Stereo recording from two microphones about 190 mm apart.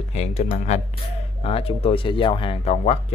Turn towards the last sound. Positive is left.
turn(degrees=30)  # may be behind; listen again after turning